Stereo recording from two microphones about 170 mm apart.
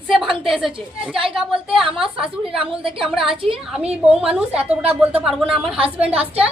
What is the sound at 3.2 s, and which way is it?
Speech, 30° right (ahead or behind).